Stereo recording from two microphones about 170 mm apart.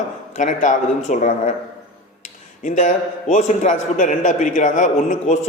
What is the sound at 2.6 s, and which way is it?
A man's voice, 45° left (ahead or behind).